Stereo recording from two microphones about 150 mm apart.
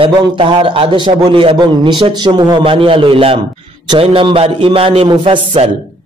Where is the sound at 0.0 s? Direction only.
35° right (ahead or behind).